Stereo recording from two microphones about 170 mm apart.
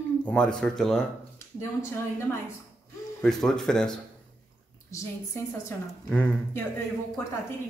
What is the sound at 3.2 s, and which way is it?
Speech, 5° left (ahead or behind).